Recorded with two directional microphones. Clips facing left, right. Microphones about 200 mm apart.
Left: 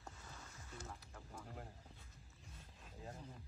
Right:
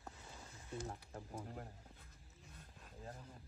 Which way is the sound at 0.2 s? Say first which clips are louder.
Right 1 dB; 20° right (ahead or behind).